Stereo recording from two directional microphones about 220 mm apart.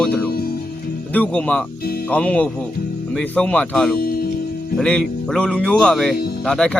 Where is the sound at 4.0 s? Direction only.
45° left (ahead or behind).